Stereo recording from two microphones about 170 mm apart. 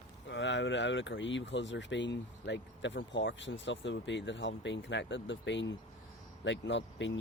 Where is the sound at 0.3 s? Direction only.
90° left.